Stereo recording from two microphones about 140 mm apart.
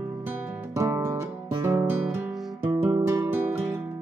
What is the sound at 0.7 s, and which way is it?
Music, 20° right (ahead or behind).